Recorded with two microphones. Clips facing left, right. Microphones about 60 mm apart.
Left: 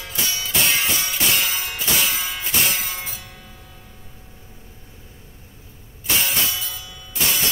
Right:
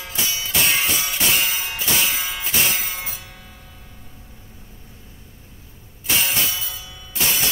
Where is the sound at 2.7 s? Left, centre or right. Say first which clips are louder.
Even; centre.